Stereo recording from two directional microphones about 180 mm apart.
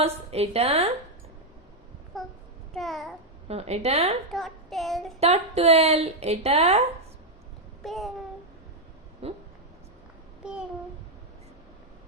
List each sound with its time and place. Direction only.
0.0 s a woman's voice: 35° right (ahead or behind)
2.1 s speech: centre (ahead or behind)
2.7 s child singing: centre (ahead or behind)
3.5 s a woman's voice: 35° right (ahead or behind)
4.3 s child singing: centre (ahead or behind)
5.2 s a woman's voice: 35° right (ahead or behind)
7.9 s child singing: centre (ahead or behind)
9.2 s a woman's voice: 35° right (ahead or behind)